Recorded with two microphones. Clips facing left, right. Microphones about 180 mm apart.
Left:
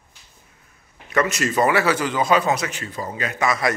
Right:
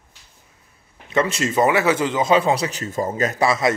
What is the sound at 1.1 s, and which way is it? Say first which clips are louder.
A man's voice: right 1 dB; 25° right (ahead or behind).